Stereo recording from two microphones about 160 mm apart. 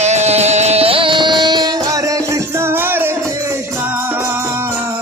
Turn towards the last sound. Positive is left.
turn(degrees=-15)  # may be behind; listen again after turning